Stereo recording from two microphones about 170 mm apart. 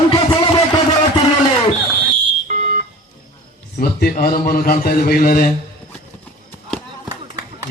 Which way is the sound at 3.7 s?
60° left (ahead or behind).